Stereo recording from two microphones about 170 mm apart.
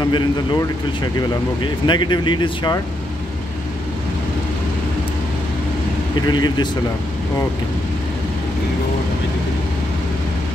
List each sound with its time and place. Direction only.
0.0 s speech: 25° left (ahead or behind)
6.2 s speech: 25° left (ahead or behind)